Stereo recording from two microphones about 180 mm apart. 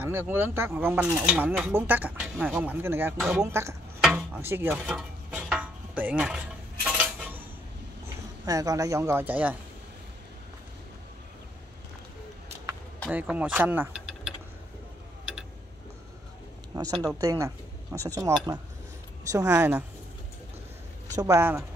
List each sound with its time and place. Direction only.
0.0 s speech: 10° right (ahead or behind)
3.2 s speech: centre (ahead or behind)
4.0 s stir: 5° right (ahead or behind)
8.5 s speech: 20° right (ahead or behind)
13.1 s speech: 10° right (ahead or behind)
16.9 s speech: 5° right (ahead or behind)
17.2 s speech: 15° right (ahead or behind)
21.2 s speech: 15° right (ahead or behind)